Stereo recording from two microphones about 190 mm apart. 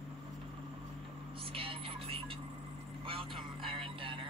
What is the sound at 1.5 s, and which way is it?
Music, 30° right (ahead or behind).